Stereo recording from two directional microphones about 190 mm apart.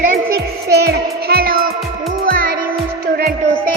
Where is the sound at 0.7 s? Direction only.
55° right (ahead or behind).